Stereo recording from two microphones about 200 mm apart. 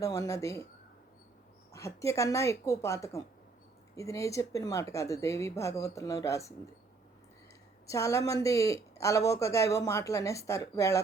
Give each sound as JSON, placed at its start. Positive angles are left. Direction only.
{"t": 0.0, "sound": "speech", "side_deg": 15}
{"t": 1.7, "sound": "speech", "side_deg": 15}
{"t": 7.9, "sound": "speech", "side_deg": 15}